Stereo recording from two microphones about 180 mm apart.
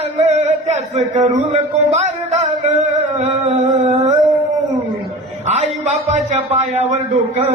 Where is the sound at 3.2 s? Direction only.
35° right (ahead or behind).